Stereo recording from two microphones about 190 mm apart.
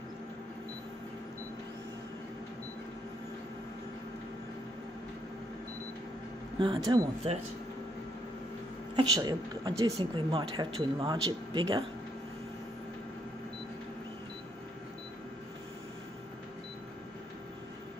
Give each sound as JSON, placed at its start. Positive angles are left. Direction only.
{"t": 6.6, "sound": "speech", "side_deg": -25}
{"t": 8.9, "sound": "speech", "side_deg": -20}